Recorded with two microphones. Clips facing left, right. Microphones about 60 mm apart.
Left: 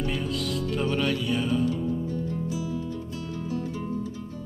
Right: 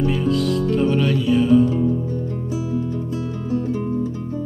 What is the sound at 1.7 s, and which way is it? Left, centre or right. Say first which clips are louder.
Music: right 7 dB; right.